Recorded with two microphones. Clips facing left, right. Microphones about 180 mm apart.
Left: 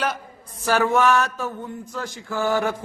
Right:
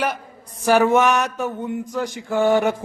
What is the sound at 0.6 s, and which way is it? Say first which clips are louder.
A man's voice: right 4 dB; 15° right (ahead or behind).